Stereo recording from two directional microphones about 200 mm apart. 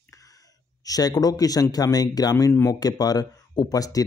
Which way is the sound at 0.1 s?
15° left (ahead or behind).